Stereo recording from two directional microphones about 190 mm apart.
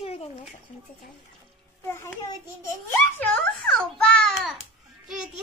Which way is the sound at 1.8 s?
15° left (ahead or behind).